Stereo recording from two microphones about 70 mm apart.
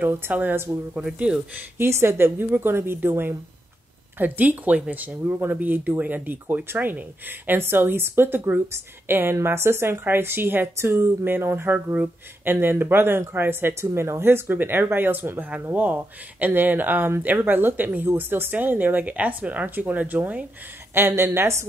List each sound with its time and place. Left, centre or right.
0.0 s speech: right
0.9 s speech: centre
1.8 s speech: right
5.2 s speech: right
10.9 s speech: right
20.9 s speech: right